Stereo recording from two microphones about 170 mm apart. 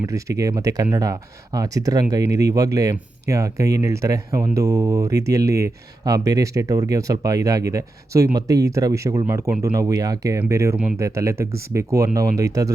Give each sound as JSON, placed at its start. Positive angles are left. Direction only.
{"t": 0.0, "sound": "speech", "side_deg": -20}